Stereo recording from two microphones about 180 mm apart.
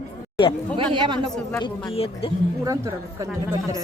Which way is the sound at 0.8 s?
25° right (ahead or behind).